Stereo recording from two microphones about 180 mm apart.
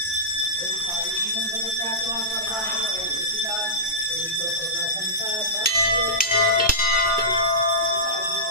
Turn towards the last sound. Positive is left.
turn(degrees=55)  # may be behind; listen again after turning